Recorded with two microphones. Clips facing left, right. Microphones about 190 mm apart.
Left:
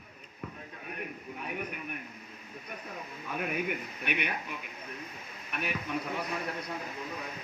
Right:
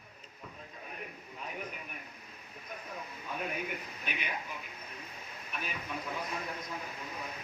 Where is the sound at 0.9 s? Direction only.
65° left (ahead or behind).